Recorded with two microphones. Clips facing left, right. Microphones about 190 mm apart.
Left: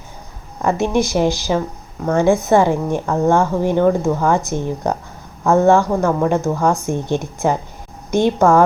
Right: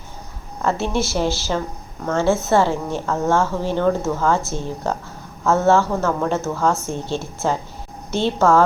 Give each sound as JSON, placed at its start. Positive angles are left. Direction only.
{"t": 0.6, "sound": "a woman's voice", "side_deg": 15}